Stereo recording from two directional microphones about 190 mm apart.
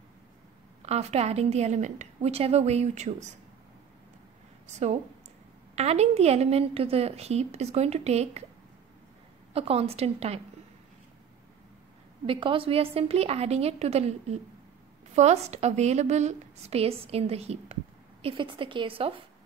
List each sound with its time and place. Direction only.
0.8 s a woman's voice: 35° right (ahead or behind)
5.8 s a woman's voice: 35° right (ahead or behind)
9.5 s a woman's voice: 30° right (ahead or behind)
12.3 s a woman's voice: 25° right (ahead or behind)